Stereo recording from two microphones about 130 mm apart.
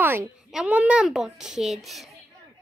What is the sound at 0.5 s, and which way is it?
A child's voice, 5° right (ahead or behind).